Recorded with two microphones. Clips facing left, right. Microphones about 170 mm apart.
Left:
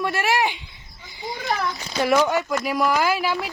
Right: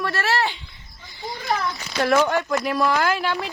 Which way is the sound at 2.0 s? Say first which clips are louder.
Even; 10° left (ahead or behind).